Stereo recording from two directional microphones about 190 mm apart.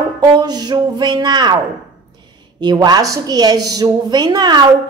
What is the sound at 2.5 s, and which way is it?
A woman's voice, 20° right (ahead or behind).